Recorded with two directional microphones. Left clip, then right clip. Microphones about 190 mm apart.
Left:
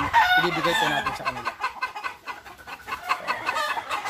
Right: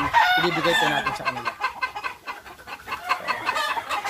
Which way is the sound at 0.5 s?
5° left (ahead or behind).